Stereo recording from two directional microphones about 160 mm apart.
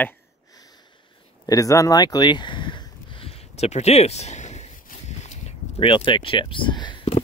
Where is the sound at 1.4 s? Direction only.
20° left (ahead or behind).